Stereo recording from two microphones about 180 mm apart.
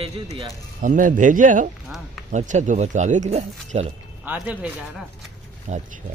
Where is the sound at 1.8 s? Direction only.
Centre (ahead or behind).